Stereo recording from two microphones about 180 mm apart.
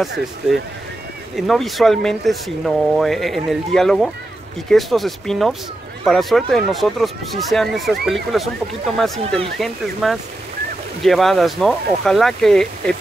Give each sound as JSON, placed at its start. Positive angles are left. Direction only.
{"t": 0.4, "sound": "speech", "side_deg": -5}